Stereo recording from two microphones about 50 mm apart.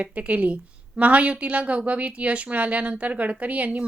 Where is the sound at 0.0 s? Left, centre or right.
Right.